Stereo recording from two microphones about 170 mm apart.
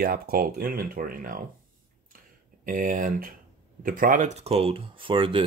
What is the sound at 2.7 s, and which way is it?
Speech, 50° right (ahead or behind).